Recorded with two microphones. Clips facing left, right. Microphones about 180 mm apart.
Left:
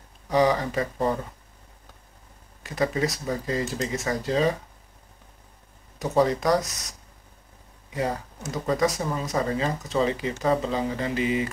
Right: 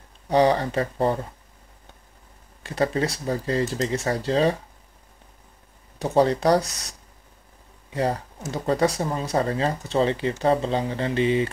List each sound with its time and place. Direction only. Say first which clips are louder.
0.3 s speech: right 2 dB; 30° right (ahead or behind)
2.6 s speech: right 2 dB; 30° right (ahead or behind)
5.9 s speech: right 2 dB; 30° right (ahead or behind)
7.9 s speech: right 3 dB; 35° right (ahead or behind)